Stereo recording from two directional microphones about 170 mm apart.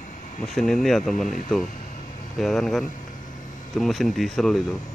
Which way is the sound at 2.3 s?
Centre (ahead or behind).